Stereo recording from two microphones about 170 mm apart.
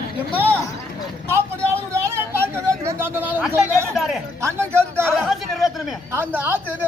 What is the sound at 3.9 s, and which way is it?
Speech, centre (ahead or behind).